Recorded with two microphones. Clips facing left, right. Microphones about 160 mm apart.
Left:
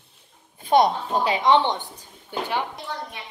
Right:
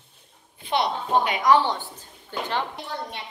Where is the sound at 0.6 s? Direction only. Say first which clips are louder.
Left 7 dB; 45° left (ahead or behind).